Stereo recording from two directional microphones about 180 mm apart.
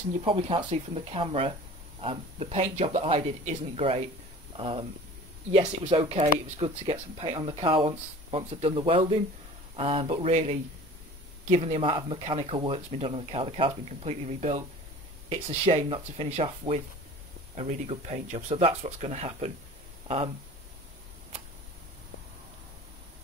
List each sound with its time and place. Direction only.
0.2 s speech: 30° right (ahead or behind)